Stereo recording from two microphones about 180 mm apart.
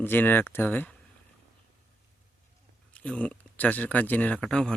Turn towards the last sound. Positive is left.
turn(degrees=5)  # may be behind; listen again after turning